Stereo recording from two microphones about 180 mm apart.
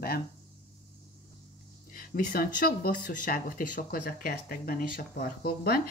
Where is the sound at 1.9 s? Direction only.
55° left (ahead or behind).